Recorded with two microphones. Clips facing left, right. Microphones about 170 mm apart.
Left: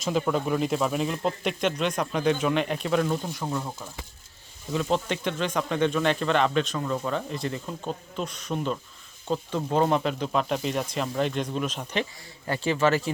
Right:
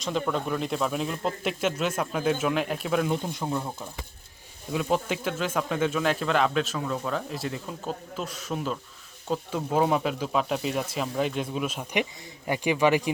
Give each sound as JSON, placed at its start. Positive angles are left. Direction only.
{"t": 0.0, "sound": "speech", "side_deg": 5}
{"t": 3.1, "sound": "speech", "side_deg": -20}
{"t": 4.7, "sound": "speech", "side_deg": -5}